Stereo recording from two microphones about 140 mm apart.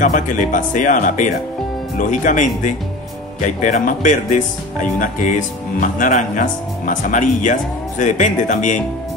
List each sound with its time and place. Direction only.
0.0 s speech: 65° left (ahead or behind)